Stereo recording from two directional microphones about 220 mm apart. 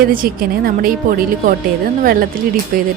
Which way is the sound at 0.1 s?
40° right (ahead or behind).